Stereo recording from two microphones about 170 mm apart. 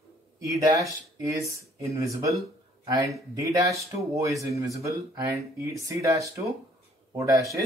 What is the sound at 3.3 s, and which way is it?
Speech, 20° right (ahead or behind).